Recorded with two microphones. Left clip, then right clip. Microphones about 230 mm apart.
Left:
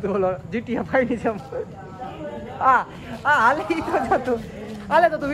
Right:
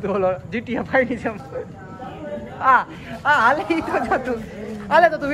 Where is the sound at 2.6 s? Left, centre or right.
Centre.